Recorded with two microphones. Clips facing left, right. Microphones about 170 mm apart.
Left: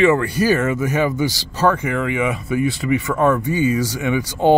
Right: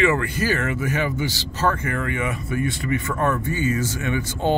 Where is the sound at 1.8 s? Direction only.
90° left.